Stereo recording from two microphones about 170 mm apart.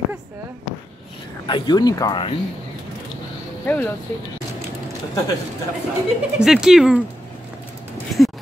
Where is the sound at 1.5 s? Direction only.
25° left (ahead or behind).